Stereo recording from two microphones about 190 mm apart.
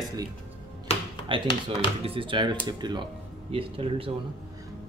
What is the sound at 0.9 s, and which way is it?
Music, 35° left (ahead or behind).